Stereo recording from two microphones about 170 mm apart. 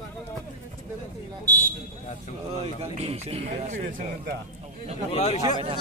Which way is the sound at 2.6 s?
35° right (ahead or behind).